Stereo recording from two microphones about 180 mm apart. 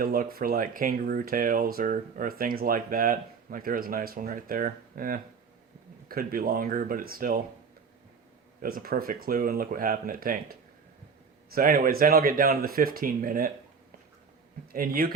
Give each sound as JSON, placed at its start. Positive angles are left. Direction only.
{"t": 0.0, "sound": "speech", "side_deg": -55}
{"t": 8.6, "sound": "speech", "side_deg": -55}
{"t": 14.7, "sound": "speech", "side_deg": -55}